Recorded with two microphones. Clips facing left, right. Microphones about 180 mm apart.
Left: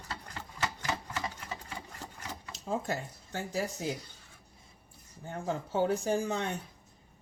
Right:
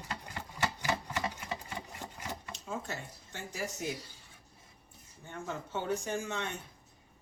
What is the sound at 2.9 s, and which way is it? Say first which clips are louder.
Speech: left 6 dB; 35° left (ahead or behind).